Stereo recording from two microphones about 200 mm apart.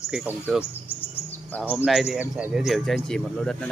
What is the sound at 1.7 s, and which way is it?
Speech, centre (ahead or behind).